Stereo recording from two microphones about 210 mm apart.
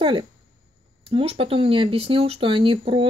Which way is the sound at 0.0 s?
25° right (ahead or behind).